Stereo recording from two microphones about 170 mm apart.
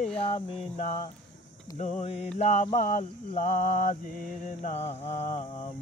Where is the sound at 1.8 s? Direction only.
40° left (ahead or behind).